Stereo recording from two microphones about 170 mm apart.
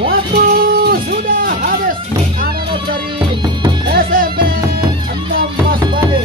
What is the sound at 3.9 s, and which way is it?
Music, 60° right (ahead or behind).